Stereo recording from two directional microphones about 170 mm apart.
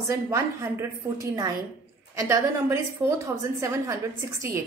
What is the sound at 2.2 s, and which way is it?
A woman's voice, 15° right (ahead or behind).